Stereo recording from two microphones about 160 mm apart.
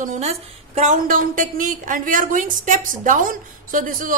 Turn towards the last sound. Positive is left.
turn(degrees=-55)  # may be behind; listen again after turning